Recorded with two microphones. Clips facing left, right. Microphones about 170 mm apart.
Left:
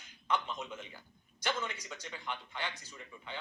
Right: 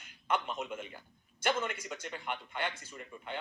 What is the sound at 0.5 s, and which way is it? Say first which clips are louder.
A man's voice: right 4 dB; 55° right (ahead or behind).